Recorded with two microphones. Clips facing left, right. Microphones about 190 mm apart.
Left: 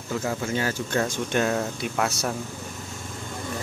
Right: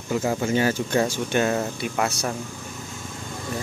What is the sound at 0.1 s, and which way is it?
Speech, 15° right (ahead or behind).